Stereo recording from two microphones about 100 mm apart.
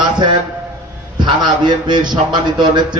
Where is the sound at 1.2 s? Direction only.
50° right (ahead or behind).